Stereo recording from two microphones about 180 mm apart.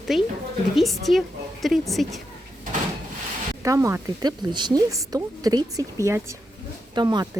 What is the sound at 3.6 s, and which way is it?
Speech, 15° right (ahead or behind).